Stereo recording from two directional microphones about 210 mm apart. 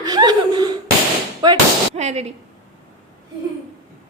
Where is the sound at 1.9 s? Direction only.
30° right (ahead or behind).